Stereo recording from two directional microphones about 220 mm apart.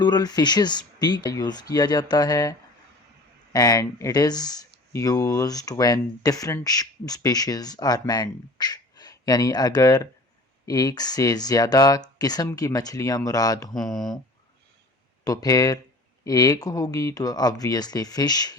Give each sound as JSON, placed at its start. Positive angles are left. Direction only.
{"t": 0.0, "sound": "speech", "side_deg": 20}
{"t": 13.7, "sound": "speech", "side_deg": 0}
{"t": 15.2, "sound": "speech", "side_deg": 15}